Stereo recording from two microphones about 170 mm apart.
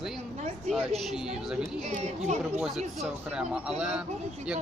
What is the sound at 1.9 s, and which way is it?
Speech, 40° right (ahead or behind).